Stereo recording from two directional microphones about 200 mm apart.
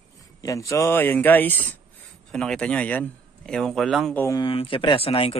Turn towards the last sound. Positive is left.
turn(degrees=30)  # may be behind; listen again after turning